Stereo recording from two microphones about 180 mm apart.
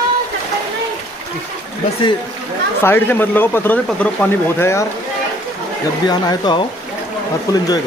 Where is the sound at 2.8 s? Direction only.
10° left (ahead or behind).